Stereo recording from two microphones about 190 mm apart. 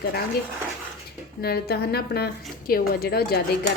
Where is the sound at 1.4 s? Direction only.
55° left (ahead or behind).